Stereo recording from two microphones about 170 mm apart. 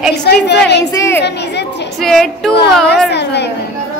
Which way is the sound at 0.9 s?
15° left (ahead or behind).